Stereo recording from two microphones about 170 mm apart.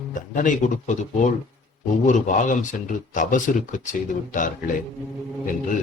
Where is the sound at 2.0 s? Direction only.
45° left (ahead or behind).